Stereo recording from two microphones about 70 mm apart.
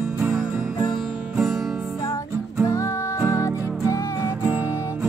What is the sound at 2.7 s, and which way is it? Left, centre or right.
Music, left.